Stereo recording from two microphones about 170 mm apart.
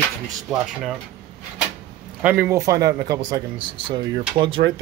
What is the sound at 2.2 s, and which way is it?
A man's voice, 10° right (ahead or behind).